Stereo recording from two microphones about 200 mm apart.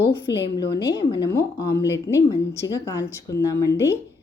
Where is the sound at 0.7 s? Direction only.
60° left (ahead or behind).